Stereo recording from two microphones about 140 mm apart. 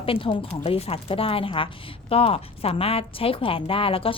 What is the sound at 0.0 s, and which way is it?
Speech, 40° left (ahead or behind).